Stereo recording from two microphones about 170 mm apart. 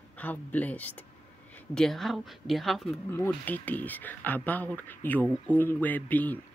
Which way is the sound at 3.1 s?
10° left (ahead or behind).